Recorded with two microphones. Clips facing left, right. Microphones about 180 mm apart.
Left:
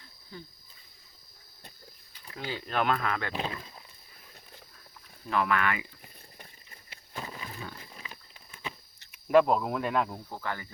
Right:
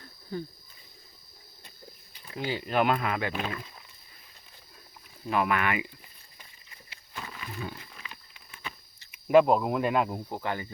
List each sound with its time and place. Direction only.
0.0 s a sound: 50° right (ahead or behind)
2.3 s speech: 15° right (ahead or behind)
3.3 s speech: 25° left (ahead or behind)
5.2 s speech: 15° right (ahead or behind)
6.4 s a sound: 55° left (ahead or behind)
7.2 s wild animals: 35° left (ahead or behind)
7.9 s a sound: 35° left (ahead or behind)
9.1 s speech: 5° right (ahead or behind)
10.3 s cricket: 20° right (ahead or behind)